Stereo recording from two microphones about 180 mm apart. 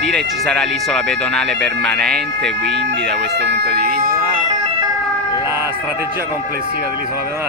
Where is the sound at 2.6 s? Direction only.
65° right (ahead or behind).